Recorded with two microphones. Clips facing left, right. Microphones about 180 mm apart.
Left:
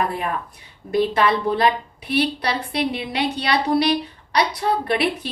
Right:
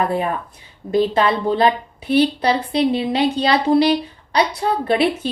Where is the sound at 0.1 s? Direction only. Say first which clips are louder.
Right 5 dB; 30° right (ahead or behind).